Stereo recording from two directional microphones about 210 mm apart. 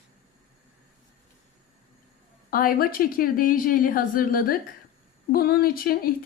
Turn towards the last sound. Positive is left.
turn(degrees=45)  # may be behind; listen again after turning